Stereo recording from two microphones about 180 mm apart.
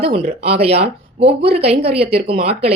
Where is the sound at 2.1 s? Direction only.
60° right (ahead or behind).